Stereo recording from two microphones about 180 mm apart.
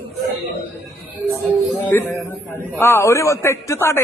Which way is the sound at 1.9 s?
10° left (ahead or behind).